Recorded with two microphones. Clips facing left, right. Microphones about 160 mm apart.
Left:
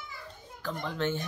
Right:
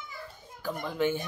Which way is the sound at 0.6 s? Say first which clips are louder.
Right 3 dB; 10° right (ahead or behind).